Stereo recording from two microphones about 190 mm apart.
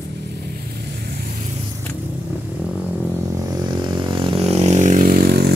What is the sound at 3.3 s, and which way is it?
Vehicle, 20° right (ahead or behind).